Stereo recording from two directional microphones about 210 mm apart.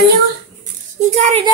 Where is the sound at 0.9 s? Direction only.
35° right (ahead or behind).